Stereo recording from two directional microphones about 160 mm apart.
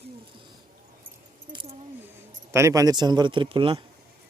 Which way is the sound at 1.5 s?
30° right (ahead or behind).